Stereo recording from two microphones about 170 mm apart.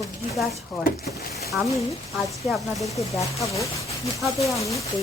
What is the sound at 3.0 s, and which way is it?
Speech, 20° left (ahead or behind).